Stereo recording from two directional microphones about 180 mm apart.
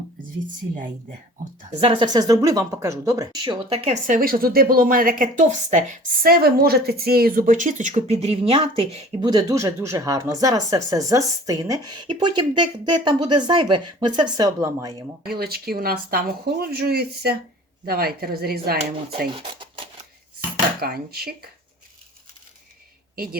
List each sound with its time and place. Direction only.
1.8 s speech: 30° right (ahead or behind)
9.2 s speech: 20° right (ahead or behind)
15.3 s speech: 60° right (ahead or behind)
19.3 s speech: 30° right (ahead or behind)
20.8 s speech: 60° right (ahead or behind)
23.1 s a man's voice: 55° right (ahead or behind)